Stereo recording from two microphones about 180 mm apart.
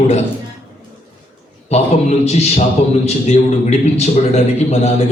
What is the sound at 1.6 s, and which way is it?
A man's voice, 35° left (ahead or behind).